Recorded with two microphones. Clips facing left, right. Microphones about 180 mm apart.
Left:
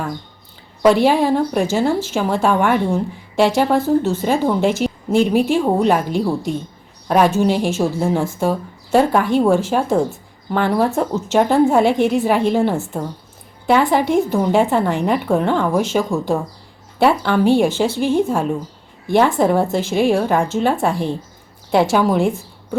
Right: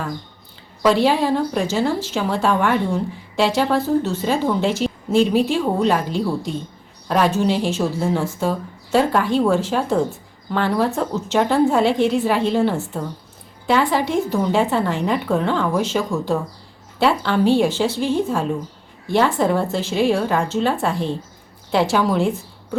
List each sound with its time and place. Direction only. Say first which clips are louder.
0.9 s a woman's voice: left 3 dB; 50° left (ahead or behind)
13.7 s a woman's voice: left 3 dB; 55° left (ahead or behind)